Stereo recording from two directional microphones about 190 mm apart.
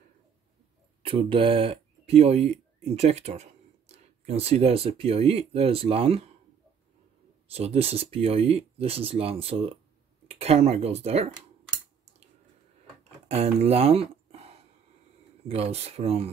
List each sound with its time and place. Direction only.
1.0 s speech: 30° right (ahead or behind)
7.4 s speech: 30° right (ahead or behind)
13.3 s a sound: 35° right (ahead or behind)
15.4 s speech: 30° right (ahead or behind)